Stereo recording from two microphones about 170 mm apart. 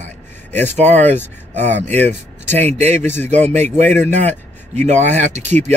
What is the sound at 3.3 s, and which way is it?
Speech, 40° right (ahead or behind).